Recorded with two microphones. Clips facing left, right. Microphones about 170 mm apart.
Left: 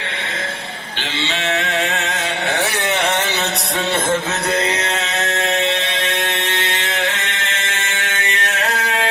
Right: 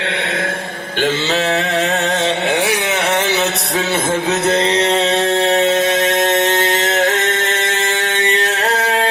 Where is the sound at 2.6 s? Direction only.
15° right (ahead or behind).